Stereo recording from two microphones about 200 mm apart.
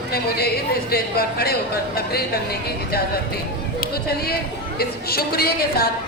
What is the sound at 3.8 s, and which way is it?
A woman's voice, 50° left (ahead or behind).